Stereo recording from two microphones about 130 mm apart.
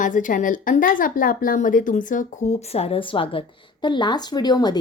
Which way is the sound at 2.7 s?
50° left (ahead or behind).